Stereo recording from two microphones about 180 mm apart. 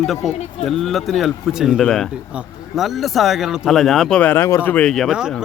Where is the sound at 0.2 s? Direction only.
Centre (ahead or behind).